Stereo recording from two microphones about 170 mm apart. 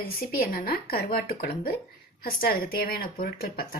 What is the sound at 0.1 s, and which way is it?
Speech, 60° left (ahead or behind).